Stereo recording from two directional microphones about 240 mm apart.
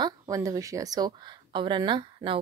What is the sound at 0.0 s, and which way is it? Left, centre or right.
Speech, centre.